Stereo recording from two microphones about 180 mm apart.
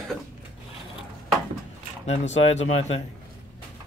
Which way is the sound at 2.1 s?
40° left (ahead or behind).